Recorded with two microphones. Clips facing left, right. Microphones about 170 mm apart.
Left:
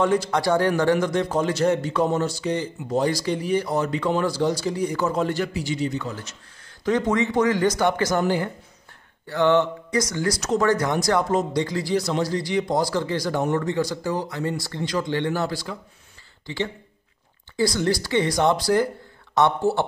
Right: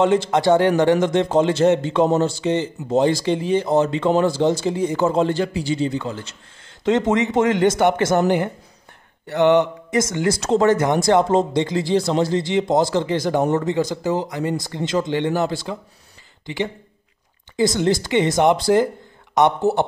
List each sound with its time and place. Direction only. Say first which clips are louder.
0.0 s speech: right 4 dB; 25° right (ahead or behind)
9.3 s speech: right 4 dB; 20° right (ahead or behind)